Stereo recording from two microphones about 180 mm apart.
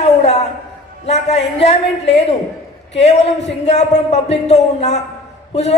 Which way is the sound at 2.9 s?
35° left (ahead or behind).